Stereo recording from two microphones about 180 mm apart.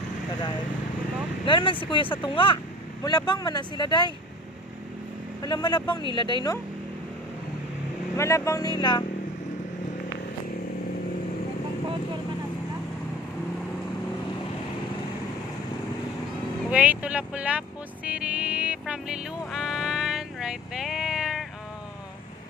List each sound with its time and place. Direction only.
1.4 s speech: 30° left (ahead or behind)
5.4 s speech: 25° left (ahead or behind)
8.2 s speech: 15° left (ahead or behind)
16.7 s music: 10° right (ahead or behind)